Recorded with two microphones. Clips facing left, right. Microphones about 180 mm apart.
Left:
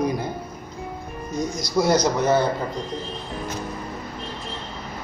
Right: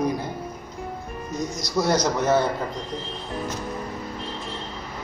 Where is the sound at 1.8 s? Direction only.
10° left (ahead or behind).